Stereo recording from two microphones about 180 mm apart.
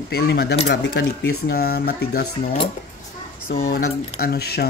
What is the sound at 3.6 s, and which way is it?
Speech, 55° left (ahead or behind).